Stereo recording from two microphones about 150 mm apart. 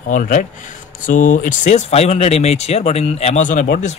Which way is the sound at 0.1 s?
60° left (ahead or behind).